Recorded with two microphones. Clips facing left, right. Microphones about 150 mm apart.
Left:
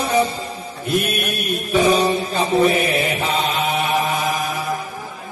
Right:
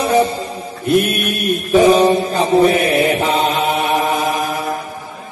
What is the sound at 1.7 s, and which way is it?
Mantra, 45° right (ahead or behind).